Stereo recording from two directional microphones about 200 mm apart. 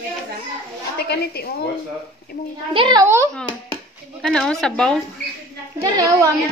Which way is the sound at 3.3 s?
5° left (ahead or behind).